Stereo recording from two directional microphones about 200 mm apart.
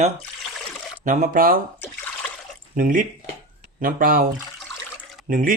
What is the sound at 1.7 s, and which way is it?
Water, 10° left (ahead or behind).